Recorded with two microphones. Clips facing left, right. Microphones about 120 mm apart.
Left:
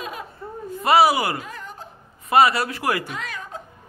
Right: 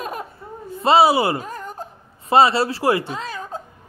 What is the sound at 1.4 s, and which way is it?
Whimper, 45° right (ahead or behind).